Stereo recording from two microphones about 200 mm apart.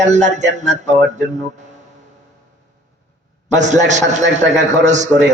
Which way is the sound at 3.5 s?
35° right (ahead or behind).